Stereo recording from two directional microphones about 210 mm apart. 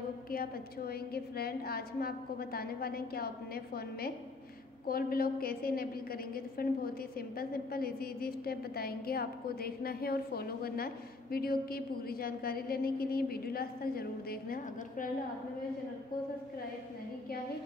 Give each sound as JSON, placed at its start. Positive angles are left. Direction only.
{"t": 0.3, "sound": "a woman's voice", "side_deg": 45}